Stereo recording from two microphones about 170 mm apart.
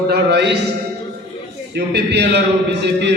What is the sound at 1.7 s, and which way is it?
A man's voice, 80° right.